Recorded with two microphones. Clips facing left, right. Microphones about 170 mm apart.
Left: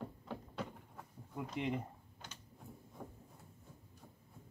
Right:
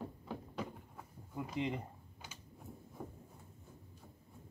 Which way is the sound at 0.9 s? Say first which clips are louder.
Right 1 dB; 5° right (ahead or behind).